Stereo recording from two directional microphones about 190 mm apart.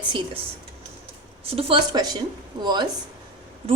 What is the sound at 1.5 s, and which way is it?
Speech, 30° right (ahead or behind).